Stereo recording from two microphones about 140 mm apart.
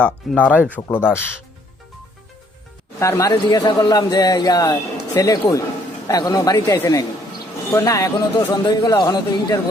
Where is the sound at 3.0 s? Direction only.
20° left (ahead or behind).